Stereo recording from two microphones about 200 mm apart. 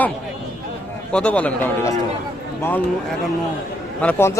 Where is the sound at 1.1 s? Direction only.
5° left (ahead or behind).